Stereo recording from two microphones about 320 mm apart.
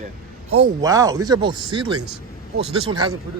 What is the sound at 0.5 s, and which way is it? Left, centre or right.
Speech, centre.